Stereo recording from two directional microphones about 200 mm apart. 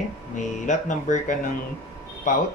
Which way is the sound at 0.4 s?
40° left (ahead or behind).